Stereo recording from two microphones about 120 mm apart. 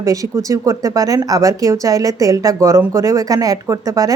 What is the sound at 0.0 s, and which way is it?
Speech, 25° right (ahead or behind).